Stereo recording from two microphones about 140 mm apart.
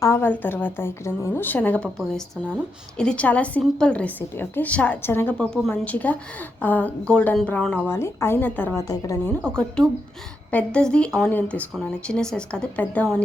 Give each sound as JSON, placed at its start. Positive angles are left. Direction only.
{"t": 0.0, "sound": "a woman's voice", "side_deg": 15}
{"t": 8.8, "sound": "speech", "side_deg": 25}
{"t": 9.5, "sound": "a woman's voice", "side_deg": 5}